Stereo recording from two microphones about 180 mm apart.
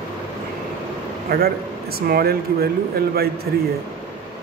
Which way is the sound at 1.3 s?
60° right (ahead or behind).